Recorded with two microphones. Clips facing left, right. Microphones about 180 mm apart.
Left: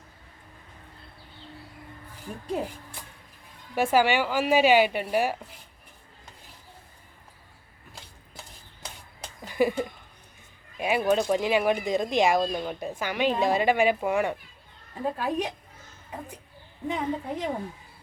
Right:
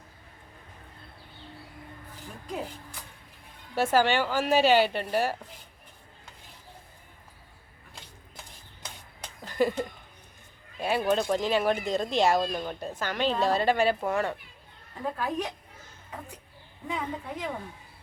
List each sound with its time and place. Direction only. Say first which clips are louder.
3.8 s speech: left 1 dB; 10° left (ahead or behind)
9.4 s a sound: left 2 dB; 10° left (ahead or behind)
10.8 s speech: left 2 dB; 10° left (ahead or behind)
16.9 s a woman's voice: left 4 dB; 30° left (ahead or behind)